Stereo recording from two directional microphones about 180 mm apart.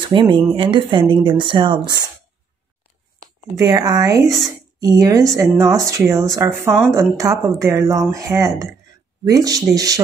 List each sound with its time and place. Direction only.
0.0 s speech: 25° right (ahead or behind)
3.5 s speech: 20° right (ahead or behind)